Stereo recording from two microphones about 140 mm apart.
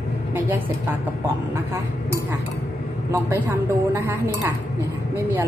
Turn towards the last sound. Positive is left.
turn(degrees=-20)  # may be behind; listen again after turning